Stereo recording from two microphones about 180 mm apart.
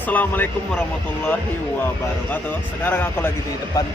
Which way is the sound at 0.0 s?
10° left (ahead or behind).